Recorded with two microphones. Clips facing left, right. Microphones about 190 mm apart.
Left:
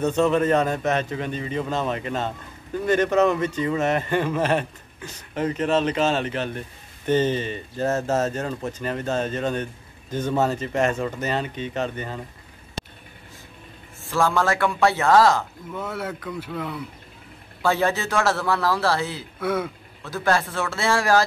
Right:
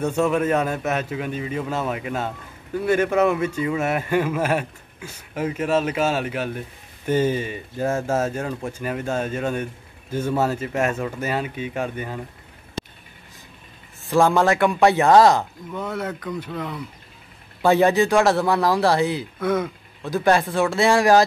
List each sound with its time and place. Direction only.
0.0 s a man's voice: 10° right (ahead or behind)
14.0 s a man's voice: 15° right (ahead or behind)
15.7 s speech: 5° left (ahead or behind)
17.6 s a man's voice: 15° right (ahead or behind)
19.4 s speech: 5° left (ahead or behind)
20.0 s a man's voice: 15° right (ahead or behind)